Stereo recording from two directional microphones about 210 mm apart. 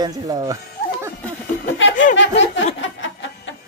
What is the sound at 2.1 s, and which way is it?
Music, 60° left (ahead or behind).